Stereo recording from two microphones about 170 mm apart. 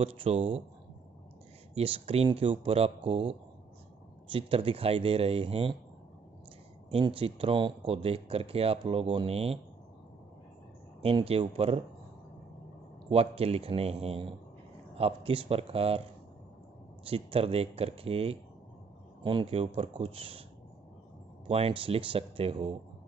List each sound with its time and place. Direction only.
0.0 s speech: 35° right (ahead or behind)
1.8 s speech: 35° right (ahead or behind)
6.9 s speech: 30° right (ahead or behind)
11.0 s speech: 35° right (ahead or behind)
13.1 s speech: 35° right (ahead or behind)
17.1 s speech: 35° right (ahead or behind)
21.5 s speech: 35° right (ahead or behind)